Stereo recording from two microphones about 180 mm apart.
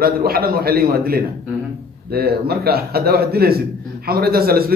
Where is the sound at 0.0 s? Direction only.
55° right (ahead or behind).